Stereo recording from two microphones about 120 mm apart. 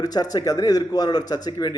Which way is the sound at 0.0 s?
35° left (ahead or behind).